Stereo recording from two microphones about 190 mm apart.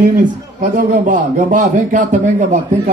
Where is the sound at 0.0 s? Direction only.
45° right (ahead or behind).